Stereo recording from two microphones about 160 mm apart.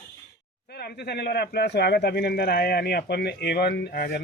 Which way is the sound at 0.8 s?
85° left.